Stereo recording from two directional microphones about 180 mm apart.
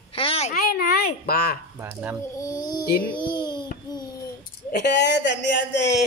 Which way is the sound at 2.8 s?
60° left (ahead or behind).